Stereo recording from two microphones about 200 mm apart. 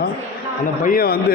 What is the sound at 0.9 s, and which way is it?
Speech, 45° left (ahead or behind).